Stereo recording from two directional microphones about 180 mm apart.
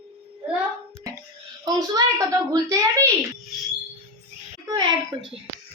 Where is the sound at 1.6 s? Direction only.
20° right (ahead or behind).